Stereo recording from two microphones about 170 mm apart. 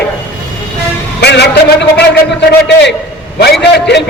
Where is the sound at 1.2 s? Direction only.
80° left.